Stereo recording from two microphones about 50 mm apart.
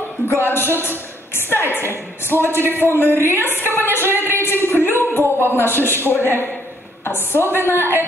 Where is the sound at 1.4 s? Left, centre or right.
Right.